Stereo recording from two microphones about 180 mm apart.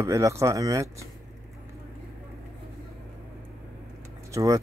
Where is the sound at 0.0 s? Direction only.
15° right (ahead or behind).